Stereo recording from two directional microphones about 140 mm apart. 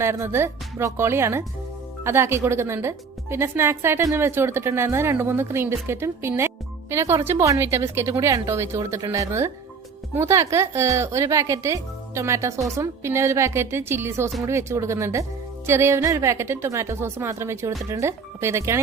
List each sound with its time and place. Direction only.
0.0 s a woman's voice: 20° right (ahead or behind)